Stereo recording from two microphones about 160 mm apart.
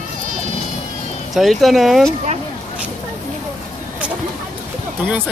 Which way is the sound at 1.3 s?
Centre (ahead or behind).